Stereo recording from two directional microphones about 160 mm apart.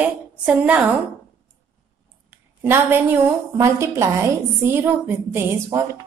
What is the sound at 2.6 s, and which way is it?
A woman's voice, 15° right (ahead or behind).